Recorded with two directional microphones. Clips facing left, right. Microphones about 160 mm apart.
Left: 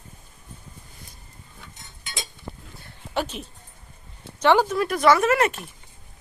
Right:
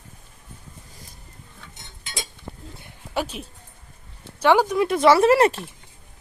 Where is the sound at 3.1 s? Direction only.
10° right (ahead or behind).